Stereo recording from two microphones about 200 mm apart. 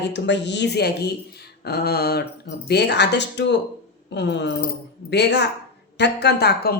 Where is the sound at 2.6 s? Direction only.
55° left (ahead or behind).